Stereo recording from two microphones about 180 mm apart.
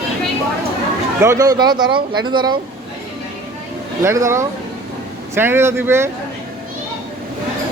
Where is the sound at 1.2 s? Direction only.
15° right (ahead or behind).